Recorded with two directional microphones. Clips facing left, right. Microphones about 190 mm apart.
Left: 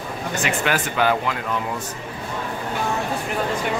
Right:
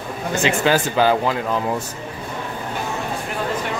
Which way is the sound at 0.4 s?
25° right (ahead or behind).